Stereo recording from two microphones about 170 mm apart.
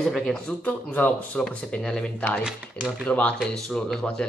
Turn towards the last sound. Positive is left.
turn(degrees=5)  # may be behind; listen again after turning